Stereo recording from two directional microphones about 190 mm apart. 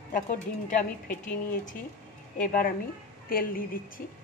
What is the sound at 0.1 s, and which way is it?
A woman's voice, 45° left (ahead or behind).